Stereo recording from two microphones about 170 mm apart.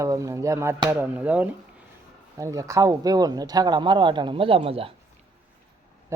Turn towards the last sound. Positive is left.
turn(degrees=-35)  # may be behind; listen again after turning